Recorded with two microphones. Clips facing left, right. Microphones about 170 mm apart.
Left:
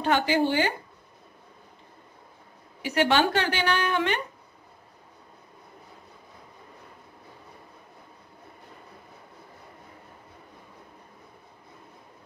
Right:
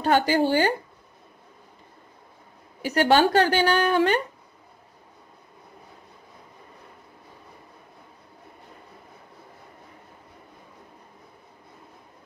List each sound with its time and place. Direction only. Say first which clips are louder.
0.0 s a woman's voice: right 3 dB; 40° right (ahead or behind)
2.8 s a woman's voice: right 3 dB; 40° right (ahead or behind)